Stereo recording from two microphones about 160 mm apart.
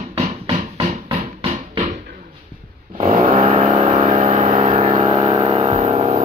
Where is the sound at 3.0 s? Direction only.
50° right (ahead or behind).